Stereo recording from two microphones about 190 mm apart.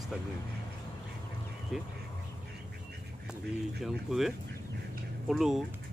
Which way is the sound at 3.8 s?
Centre (ahead or behind).